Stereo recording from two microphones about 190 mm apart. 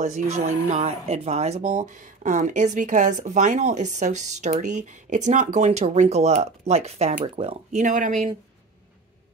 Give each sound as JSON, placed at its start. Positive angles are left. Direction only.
{"t": 0.0, "sound": "speech", "side_deg": -40}